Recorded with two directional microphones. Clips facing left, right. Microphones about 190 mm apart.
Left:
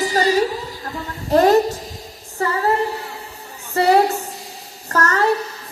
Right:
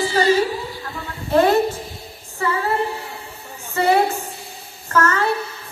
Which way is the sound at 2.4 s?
40° left (ahead or behind).